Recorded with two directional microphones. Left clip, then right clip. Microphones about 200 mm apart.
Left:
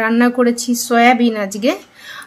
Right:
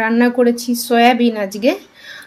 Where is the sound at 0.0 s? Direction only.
Centre (ahead or behind).